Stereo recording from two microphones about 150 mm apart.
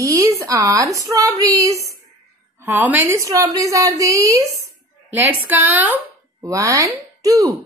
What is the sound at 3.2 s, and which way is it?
Speech, 20° right (ahead or behind).